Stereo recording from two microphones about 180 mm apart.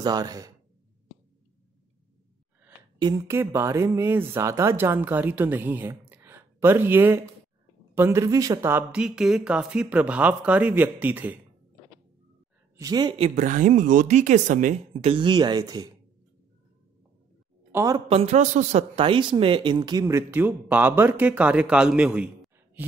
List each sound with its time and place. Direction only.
0.0 s speech: 20° right (ahead or behind)
3.0 s a man's voice: 20° right (ahead or behind)
12.7 s speech: 20° right (ahead or behind)
17.6 s a sound: 15° right (ahead or behind)
17.9 s a man's voice: 35° right (ahead or behind); by 22.8 s 5° right (ahead or behind)